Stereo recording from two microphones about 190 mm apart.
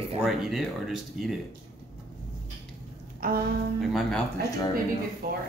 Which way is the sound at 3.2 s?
50° right (ahead or behind).